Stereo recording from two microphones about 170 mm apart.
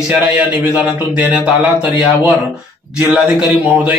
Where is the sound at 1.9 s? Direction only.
30° left (ahead or behind).